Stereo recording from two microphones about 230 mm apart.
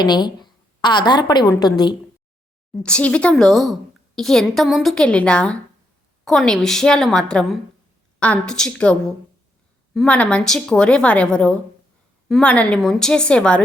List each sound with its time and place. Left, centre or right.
0.0 s a woman's voice: centre
2.8 s a woman's voice: centre